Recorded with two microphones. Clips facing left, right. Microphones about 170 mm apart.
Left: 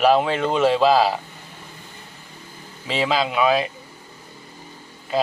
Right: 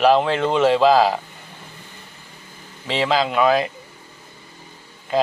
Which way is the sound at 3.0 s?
10° left (ahead or behind).